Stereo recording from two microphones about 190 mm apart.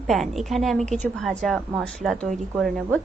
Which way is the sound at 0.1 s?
Centre (ahead or behind).